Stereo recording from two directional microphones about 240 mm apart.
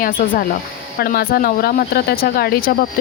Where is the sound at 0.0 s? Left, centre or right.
Left.